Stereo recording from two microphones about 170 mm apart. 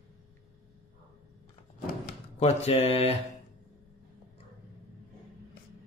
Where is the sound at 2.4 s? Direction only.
40° left (ahead or behind).